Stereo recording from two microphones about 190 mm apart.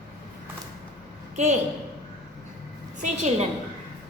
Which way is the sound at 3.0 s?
40° right (ahead or behind).